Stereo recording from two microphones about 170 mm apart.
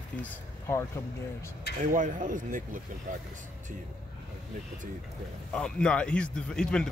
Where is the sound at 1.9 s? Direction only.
50° right (ahead or behind).